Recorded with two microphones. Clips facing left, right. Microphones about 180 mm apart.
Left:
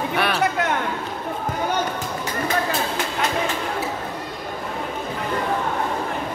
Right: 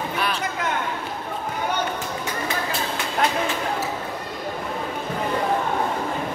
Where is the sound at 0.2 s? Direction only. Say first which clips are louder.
Left 7 dB; 70° left (ahead or behind).